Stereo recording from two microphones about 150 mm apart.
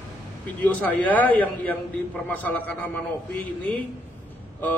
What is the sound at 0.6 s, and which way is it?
Speech, 10° left (ahead or behind).